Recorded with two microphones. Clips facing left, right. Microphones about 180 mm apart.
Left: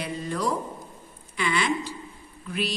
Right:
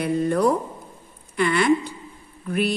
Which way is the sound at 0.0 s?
55° right (ahead or behind).